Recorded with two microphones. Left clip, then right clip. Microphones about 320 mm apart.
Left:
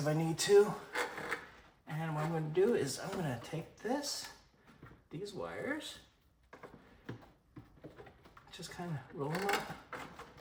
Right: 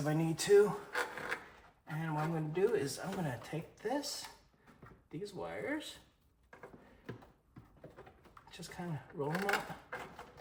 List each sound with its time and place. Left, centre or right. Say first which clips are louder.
0.0 s speech: left 1 dB; centre
8.4 s speech: left 1 dB; centre